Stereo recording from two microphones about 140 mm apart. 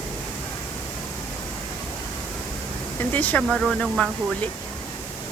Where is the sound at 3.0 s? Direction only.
10° left (ahead or behind).